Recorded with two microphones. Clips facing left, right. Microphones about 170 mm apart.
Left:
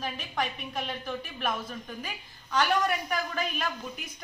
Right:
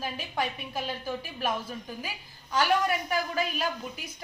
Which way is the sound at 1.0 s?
35° right (ahead or behind).